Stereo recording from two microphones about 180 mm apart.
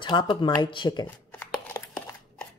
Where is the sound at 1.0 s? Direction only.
10° left (ahead or behind).